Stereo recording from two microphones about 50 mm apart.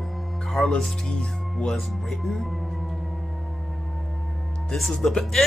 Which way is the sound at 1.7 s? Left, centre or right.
Centre.